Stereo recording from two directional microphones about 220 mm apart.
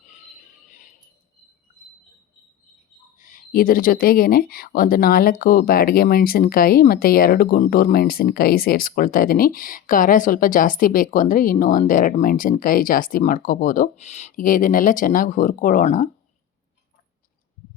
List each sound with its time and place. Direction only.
3.2 s speech: 40° left (ahead or behind)